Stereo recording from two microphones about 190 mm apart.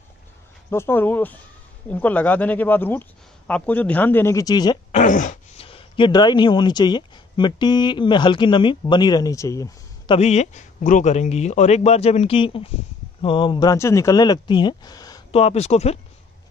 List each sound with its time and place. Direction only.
0.7 s speech: 10° left (ahead or behind)
4.9 s speech: 40° left (ahead or behind); by 10.1 s 15° left (ahead or behind)
10.1 s a man's voice: 35° left (ahead or behind); by 15.2 s 20° left (ahead or behind)
15.3 s a man's voice: 35° left (ahead or behind)